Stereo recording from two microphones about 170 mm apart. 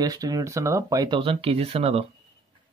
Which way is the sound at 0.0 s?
20° right (ahead or behind).